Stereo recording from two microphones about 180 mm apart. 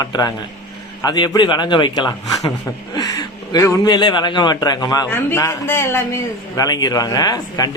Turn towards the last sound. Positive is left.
turn(degrees=20)  # may be behind; listen again after turning